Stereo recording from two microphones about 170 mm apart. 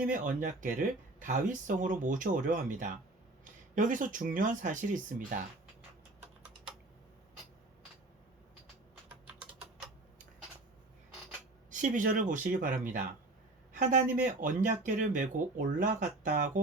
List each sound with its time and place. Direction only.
0.1 s speech: 50° right (ahead or behind)
11.7 s a man's voice: 50° right (ahead or behind)